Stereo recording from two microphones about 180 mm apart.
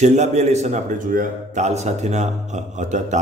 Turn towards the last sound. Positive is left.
turn(degrees=-40)  # may be behind; listen again after turning